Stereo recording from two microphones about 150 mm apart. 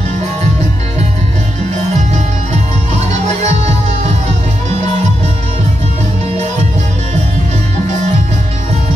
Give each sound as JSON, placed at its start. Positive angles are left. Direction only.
{"t": 3.4, "sound": "music", "side_deg": -50}